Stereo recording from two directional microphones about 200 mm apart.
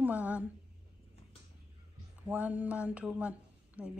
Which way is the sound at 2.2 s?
5° right (ahead or behind).